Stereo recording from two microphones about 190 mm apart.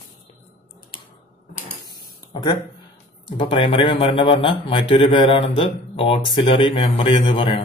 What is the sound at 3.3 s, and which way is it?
Speech, 25° left (ahead or behind).